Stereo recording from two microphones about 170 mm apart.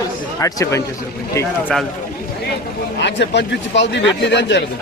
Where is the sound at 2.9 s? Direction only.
90° left.